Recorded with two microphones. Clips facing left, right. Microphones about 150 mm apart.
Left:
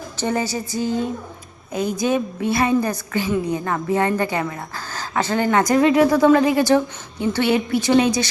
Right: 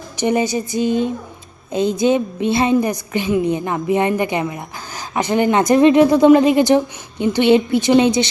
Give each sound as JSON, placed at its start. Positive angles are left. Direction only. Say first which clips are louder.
{"t": 0.2, "sound": "a woman's voice", "louder": "right 5 dB", "side_deg": -20}